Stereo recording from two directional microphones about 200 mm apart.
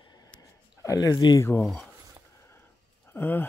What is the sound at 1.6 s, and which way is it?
Speech, centre (ahead or behind).